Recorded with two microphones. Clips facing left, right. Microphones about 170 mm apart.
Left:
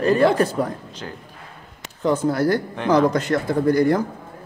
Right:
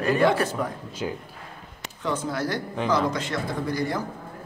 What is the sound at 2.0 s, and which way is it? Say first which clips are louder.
Speech: left 8 dB; 45° left (ahead or behind).